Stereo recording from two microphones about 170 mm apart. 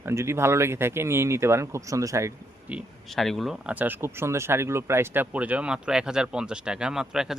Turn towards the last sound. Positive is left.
turn(degrees=-5)  # may be behind; listen again after turning